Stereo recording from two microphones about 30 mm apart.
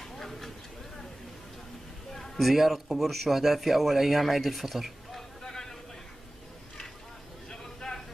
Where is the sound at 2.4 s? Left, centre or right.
Centre.